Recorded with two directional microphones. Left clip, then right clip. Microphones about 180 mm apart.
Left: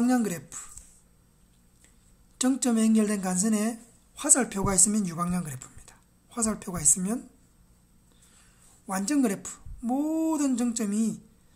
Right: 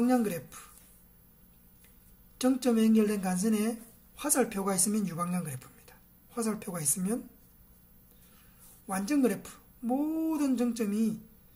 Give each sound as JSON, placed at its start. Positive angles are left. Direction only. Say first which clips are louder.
{"t": 0.0, "sound": "speech", "louder": "left 1 dB", "side_deg": 35}
{"t": 2.3, "sound": "speech", "louder": "left 1 dB", "side_deg": 30}
{"t": 8.8, "sound": "speech", "louder": "left 2 dB", "side_deg": 35}